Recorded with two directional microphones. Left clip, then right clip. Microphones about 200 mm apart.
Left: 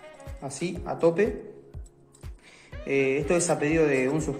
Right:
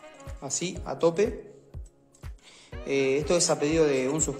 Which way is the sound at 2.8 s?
25° right (ahead or behind).